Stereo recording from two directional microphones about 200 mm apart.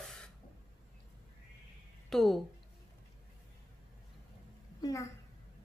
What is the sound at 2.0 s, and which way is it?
Speech, centre (ahead or behind).